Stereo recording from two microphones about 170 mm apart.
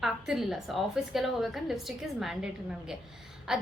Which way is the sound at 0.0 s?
Centre (ahead or behind).